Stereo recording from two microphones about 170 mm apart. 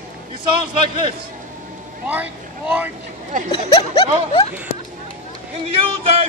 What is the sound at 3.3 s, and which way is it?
Speech, 50° right (ahead or behind).